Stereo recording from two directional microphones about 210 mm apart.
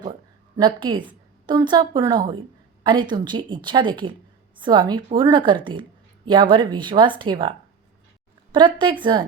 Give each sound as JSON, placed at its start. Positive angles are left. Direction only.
{"t": 0.5, "sound": "a woman's voice", "side_deg": -20}
{"t": 8.5, "sound": "a woman's voice", "side_deg": -25}